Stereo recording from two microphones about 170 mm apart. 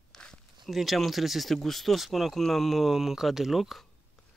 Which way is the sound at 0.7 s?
Centre (ahead or behind).